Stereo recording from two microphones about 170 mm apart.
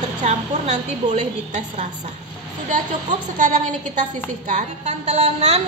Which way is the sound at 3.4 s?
45° right (ahead or behind).